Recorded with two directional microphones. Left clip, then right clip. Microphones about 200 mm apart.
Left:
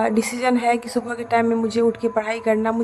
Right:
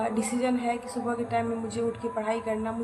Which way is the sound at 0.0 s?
50° left (ahead or behind).